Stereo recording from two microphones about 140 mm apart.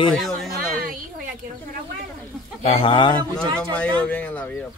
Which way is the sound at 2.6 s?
40° left (ahead or behind).